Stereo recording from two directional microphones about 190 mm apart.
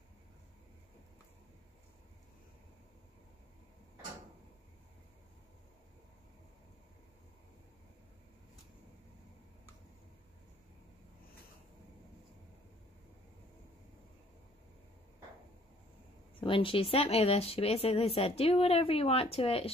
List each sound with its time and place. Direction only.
16.3 s speech: 30° left (ahead or behind)